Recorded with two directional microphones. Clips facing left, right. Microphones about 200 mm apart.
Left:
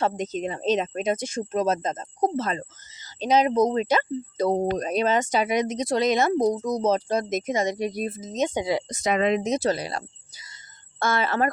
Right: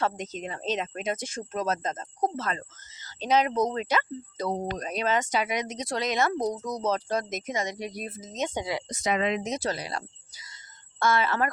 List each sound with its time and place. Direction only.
0.0 s speech: 20° left (ahead or behind)
8.4 s speech: 15° left (ahead or behind)
9.0 s speech: 50° left (ahead or behind)
9.4 s speech: 25° left (ahead or behind)
10.3 s a sound: 25° left (ahead or behind)
11.0 s speech: 25° left (ahead or behind)